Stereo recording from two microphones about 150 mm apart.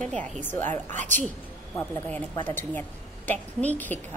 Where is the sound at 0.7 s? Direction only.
55° right (ahead or behind).